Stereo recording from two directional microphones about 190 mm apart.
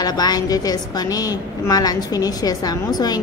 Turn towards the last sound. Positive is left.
turn(degrees=20)  # may be behind; listen again after turning